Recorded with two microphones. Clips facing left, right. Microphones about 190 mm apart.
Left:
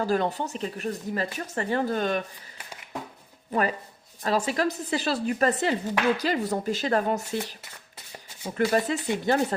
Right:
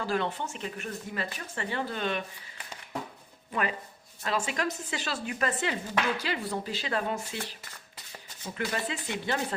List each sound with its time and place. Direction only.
0.0 s speech: 40° left (ahead or behind)
3.5 s speech: 40° left (ahead or behind)